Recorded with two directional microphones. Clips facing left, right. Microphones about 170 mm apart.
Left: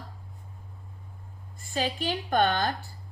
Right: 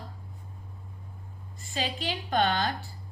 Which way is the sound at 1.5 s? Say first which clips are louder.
Left 3 dB; 50° left (ahead or behind).